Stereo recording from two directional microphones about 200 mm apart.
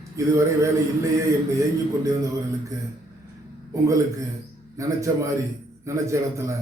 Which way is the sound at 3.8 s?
15° right (ahead or behind).